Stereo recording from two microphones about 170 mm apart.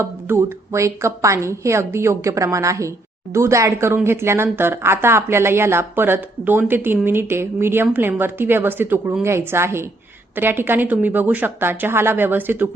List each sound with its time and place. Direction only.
0.0 s speech: 15° right (ahead or behind)